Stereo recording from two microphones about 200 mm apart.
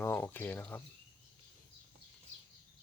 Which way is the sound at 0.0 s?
10° left (ahead or behind).